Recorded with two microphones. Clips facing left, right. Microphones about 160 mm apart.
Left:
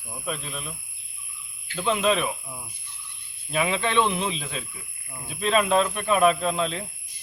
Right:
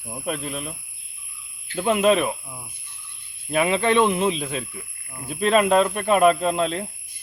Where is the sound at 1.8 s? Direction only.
50° right (ahead or behind).